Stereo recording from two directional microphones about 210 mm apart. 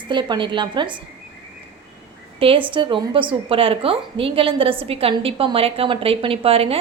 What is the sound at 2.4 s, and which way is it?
A woman's voice, 25° right (ahead or behind).